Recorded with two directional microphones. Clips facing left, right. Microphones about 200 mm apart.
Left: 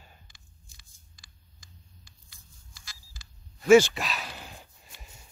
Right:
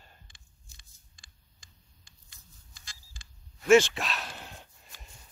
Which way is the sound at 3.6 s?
Centre (ahead or behind).